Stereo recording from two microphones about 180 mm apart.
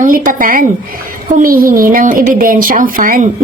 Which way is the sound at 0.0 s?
50° right (ahead or behind).